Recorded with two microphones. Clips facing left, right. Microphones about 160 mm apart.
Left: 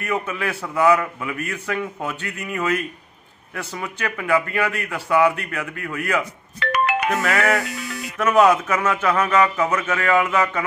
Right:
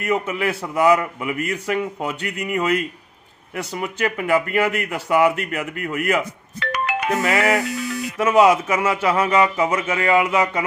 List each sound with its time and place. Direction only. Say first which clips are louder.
0.0 s speech: right 3 dB; 20° right (ahead or behind)
6.6 s music: left 3 dB; 65° left (ahead or behind)
7.2 s speech: right 2 dB; 25° right (ahead or behind)
8.5 s speech: right 1 dB; 10° right (ahead or behind)